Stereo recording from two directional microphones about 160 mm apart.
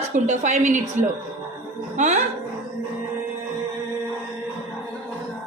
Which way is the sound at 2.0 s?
45° right (ahead or behind).